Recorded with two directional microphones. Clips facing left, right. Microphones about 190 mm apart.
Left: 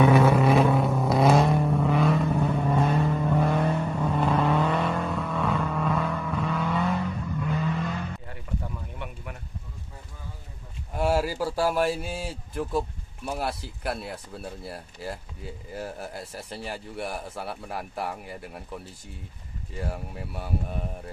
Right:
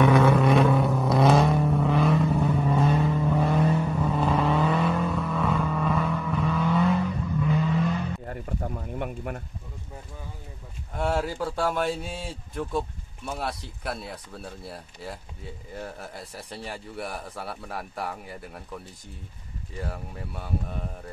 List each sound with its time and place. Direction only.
0.0 s vehicle: centre (ahead or behind)
8.3 s a sound: 45° right (ahead or behind)
11.0 s a man's voice: 5° left (ahead or behind)
19.8 s a man's voice: 5° left (ahead or behind)